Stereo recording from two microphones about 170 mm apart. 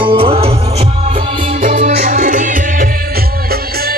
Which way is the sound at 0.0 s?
30° right (ahead or behind).